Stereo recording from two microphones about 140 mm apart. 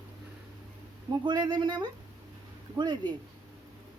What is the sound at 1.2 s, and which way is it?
Speech, 30° right (ahead or behind).